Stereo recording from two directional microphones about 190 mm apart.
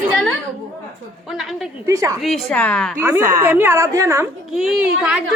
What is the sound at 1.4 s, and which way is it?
Speech, centre (ahead or behind).